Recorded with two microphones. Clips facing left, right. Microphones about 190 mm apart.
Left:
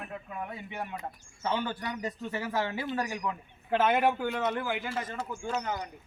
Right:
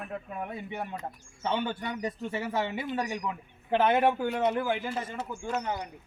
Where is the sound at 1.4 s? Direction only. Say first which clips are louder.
Right 1 dB; 25° right (ahead or behind).